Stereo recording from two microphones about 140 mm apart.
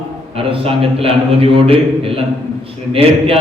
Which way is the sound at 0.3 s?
40° right (ahead or behind).